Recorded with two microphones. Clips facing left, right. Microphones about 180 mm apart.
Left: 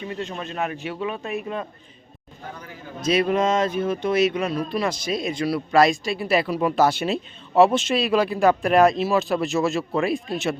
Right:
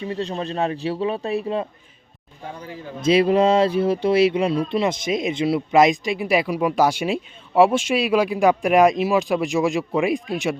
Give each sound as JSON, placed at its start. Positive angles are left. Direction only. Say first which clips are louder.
{"t": 0.0, "sound": "speech", "louder": "right 4 dB", "side_deg": -35}